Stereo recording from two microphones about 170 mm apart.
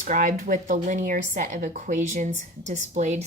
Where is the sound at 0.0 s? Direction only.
50° right (ahead or behind).